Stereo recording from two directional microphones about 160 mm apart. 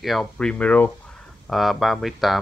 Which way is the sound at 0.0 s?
Centre (ahead or behind).